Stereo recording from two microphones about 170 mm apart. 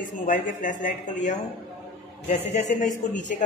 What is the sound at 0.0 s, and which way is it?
A man's voice, 50° left (ahead or behind).